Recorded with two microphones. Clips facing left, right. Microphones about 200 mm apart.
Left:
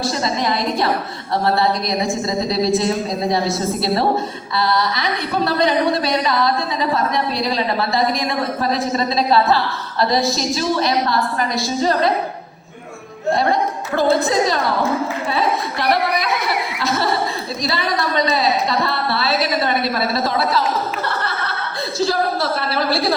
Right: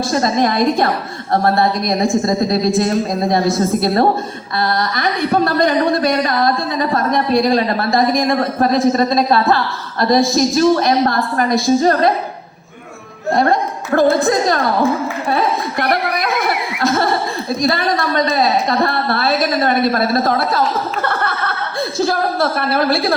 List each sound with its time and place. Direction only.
0.1 s a woman's voice: 50° right (ahead or behind)
13.3 s a woman's voice: 50° right (ahead or behind)